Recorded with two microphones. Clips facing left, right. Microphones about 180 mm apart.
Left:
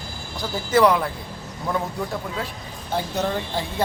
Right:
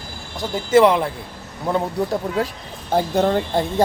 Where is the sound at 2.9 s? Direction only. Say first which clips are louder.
Right 7 dB; 50° right (ahead or behind).